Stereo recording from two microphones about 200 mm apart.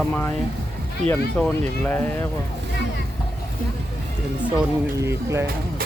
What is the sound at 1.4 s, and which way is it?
Speech, 5° left (ahead or behind).